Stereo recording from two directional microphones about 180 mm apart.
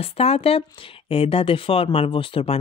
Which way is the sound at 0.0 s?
35° left (ahead or behind).